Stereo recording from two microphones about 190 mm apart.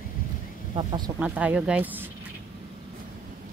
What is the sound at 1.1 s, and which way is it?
Speech, 5° right (ahead or behind).